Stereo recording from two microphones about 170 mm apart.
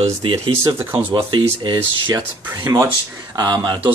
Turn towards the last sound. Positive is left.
turn(degrees=-25)  # may be behind; listen again after turning